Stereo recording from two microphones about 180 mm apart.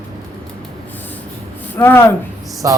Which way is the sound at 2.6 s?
15° right (ahead or behind).